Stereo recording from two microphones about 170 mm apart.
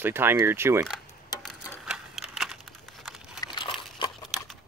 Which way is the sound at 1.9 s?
Centre (ahead or behind).